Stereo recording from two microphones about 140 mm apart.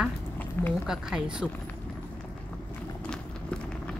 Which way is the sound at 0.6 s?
15° left (ahead or behind).